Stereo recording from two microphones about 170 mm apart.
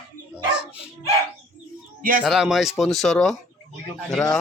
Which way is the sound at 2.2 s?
Centre (ahead or behind).